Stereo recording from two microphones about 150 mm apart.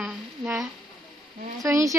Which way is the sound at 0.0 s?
5° right (ahead or behind).